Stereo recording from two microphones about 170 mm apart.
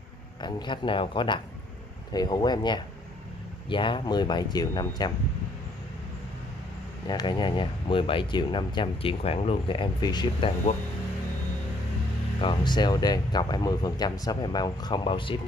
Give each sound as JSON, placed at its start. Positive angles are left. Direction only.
{"t": 0.4, "sound": "speech", "side_deg": 25}
{"t": 7.1, "sound": "speech", "side_deg": 25}
{"t": 12.4, "sound": "speech", "side_deg": 25}